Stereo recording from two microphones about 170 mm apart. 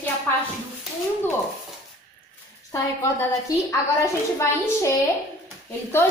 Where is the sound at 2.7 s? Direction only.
20° left (ahead or behind).